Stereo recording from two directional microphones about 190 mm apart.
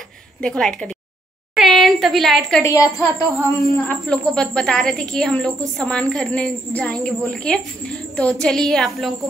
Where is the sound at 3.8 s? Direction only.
5° left (ahead or behind).